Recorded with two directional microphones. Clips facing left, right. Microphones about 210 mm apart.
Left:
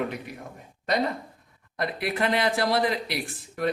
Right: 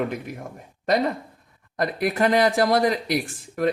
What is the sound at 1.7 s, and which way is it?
A man's voice, 45° right (ahead or behind).